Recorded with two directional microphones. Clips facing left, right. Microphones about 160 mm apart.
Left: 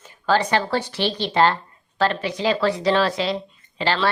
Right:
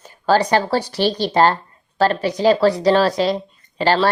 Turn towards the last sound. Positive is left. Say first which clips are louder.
# right 5 dB
turn(degrees=-40)  # may be behind; listen again after turning